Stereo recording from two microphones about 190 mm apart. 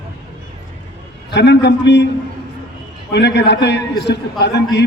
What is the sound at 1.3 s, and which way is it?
Speech, 65° left (ahead or behind).